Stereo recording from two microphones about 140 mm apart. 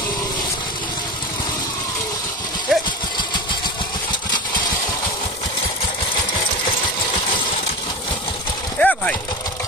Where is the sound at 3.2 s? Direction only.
35° left (ahead or behind).